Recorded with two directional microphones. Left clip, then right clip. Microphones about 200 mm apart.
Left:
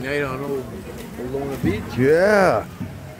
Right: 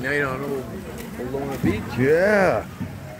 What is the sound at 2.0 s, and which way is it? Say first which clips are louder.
Speech: left 2 dB; 25° left (ahead or behind).